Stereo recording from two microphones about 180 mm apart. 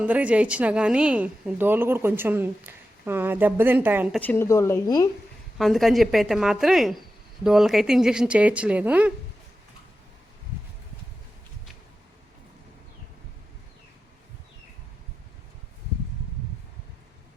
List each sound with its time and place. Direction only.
0.0 s a woman's voice: 10° right (ahead or behind)
4.2 s speech: 10° left (ahead or behind)
5.5 s speech: centre (ahead or behind)